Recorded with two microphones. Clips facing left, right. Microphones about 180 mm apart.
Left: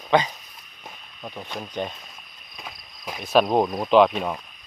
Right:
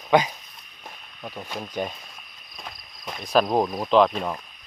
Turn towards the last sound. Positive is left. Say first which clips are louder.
# left 2 dB
turn(degrees=5)  # may be behind; listen again after turning